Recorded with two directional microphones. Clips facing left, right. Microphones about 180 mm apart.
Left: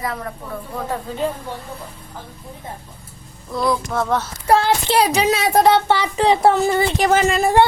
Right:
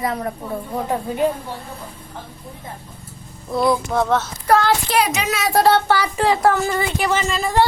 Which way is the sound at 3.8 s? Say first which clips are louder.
Right 2 dB; centre (ahead or behind).